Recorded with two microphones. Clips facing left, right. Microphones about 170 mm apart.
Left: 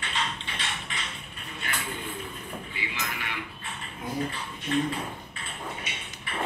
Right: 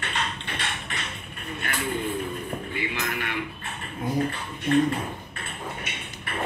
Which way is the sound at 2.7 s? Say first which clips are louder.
Right 6 dB; 55° right (ahead or behind).